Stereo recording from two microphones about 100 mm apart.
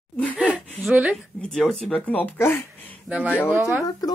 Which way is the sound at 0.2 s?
15° left (ahead or behind).